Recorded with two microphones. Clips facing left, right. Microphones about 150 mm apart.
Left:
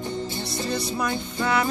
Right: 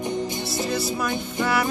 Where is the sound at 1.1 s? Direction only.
15° right (ahead or behind).